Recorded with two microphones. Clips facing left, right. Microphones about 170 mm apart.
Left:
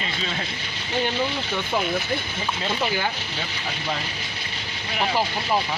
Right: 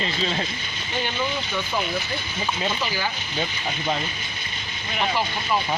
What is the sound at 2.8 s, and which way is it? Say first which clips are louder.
Speech: left 2 dB; 55° left (ahead or behind).